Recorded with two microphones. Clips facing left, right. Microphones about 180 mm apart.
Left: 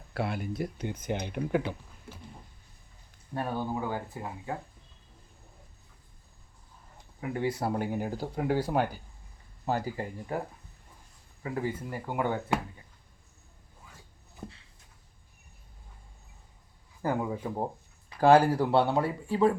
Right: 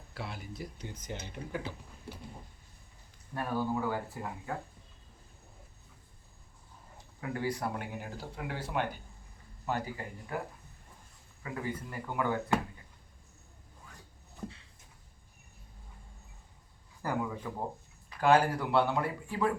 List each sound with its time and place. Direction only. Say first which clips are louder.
0.1 s speech: left 10 dB; 60° left (ahead or behind)
3.3 s speech: left 1 dB; 25° left (ahead or behind)
7.2 s speech: left 4 dB; 25° left (ahead or behind)
11.4 s speech: left 5 dB; 30° left (ahead or behind)
17.0 s speech: left 4 dB; 25° left (ahead or behind)